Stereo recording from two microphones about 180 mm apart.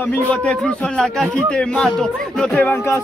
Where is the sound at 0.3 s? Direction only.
5° left (ahead or behind).